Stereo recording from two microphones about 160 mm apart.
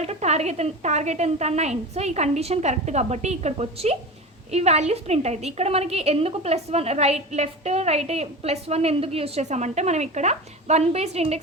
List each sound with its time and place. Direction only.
0.0 s a woman's voice: 45° right (ahead or behind)